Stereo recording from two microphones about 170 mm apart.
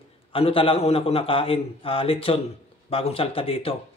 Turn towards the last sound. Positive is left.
turn(degrees=35)  # may be behind; listen again after turning